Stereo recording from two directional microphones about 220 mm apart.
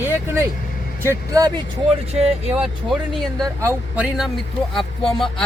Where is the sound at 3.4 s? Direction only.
15° right (ahead or behind).